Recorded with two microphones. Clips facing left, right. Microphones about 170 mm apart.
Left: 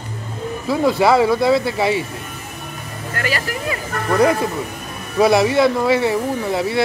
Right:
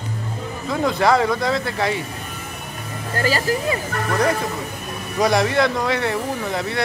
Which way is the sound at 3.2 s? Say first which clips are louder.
Right 2 dB; 30° right (ahead or behind).